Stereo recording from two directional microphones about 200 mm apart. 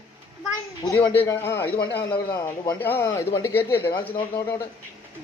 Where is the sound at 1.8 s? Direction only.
55° left (ahead or behind).